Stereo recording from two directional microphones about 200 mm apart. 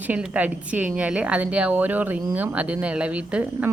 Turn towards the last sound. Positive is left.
turn(degrees=-5)  # may be behind; listen again after turning